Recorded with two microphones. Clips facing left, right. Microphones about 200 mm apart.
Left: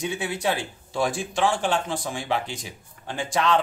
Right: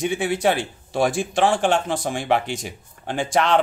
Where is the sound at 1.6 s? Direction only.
80° right.